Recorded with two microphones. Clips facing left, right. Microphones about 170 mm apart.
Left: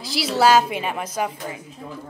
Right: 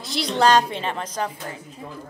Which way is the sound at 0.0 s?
5° left (ahead or behind).